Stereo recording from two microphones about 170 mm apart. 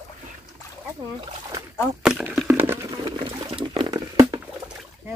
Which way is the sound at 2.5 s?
10° right (ahead or behind).